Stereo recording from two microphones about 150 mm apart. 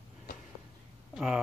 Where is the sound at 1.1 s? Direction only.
5° right (ahead or behind).